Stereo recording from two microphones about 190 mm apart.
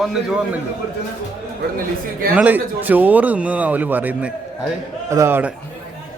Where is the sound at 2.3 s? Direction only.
10° right (ahead or behind).